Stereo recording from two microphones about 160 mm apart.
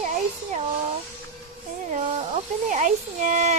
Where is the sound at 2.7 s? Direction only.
50° right (ahead or behind).